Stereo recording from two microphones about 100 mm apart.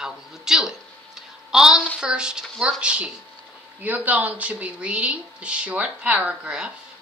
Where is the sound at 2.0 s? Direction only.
10° right (ahead or behind).